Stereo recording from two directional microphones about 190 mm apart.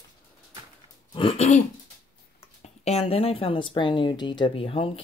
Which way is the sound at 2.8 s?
30° left (ahead or behind).